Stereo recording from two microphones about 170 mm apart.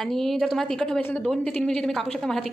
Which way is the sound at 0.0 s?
Centre (ahead or behind).